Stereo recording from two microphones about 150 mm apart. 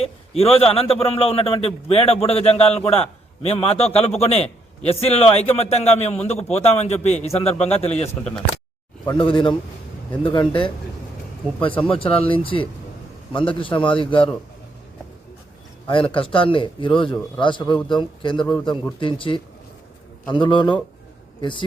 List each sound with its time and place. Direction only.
0.0 s a man's voice: 40° left (ahead or behind)
9.1 s a man's voice: 35° left (ahead or behind)
15.9 s a man's voice: 35° left (ahead or behind)